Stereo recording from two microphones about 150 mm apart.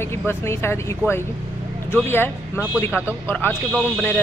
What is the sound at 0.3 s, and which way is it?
Speech, 15° left (ahead or behind).